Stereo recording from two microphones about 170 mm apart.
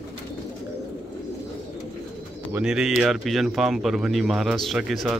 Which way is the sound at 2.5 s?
5° right (ahead or behind).